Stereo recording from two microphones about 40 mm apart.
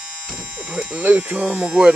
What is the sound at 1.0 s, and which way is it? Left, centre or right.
Speech, right.